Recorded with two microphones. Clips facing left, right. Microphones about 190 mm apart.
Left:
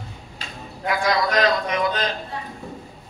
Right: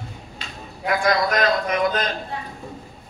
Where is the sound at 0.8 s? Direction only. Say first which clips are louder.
Right 1 dB; 50° right (ahead or behind).